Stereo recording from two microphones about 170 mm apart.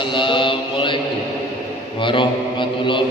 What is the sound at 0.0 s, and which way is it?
Mantra, 30° left (ahead or behind).